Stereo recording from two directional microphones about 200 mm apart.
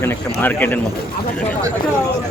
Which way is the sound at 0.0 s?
10° left (ahead or behind).